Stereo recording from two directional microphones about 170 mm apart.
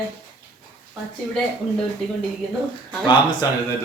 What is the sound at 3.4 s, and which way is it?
Speech, 20° left (ahead or behind).